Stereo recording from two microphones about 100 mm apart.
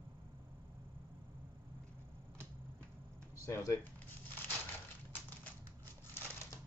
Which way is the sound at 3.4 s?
30° left (ahead or behind).